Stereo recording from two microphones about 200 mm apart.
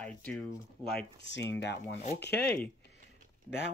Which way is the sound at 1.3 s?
60° left (ahead or behind).